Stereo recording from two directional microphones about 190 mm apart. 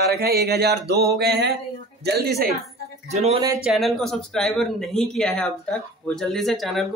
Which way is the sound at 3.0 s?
35° right (ahead or behind).